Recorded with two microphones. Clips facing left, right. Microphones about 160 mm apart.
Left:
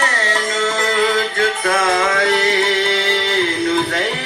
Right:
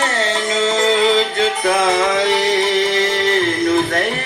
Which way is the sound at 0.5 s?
20° right (ahead or behind).